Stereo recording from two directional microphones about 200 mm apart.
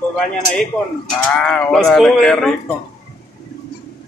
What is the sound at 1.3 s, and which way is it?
A man's voice, 5° left (ahead or behind).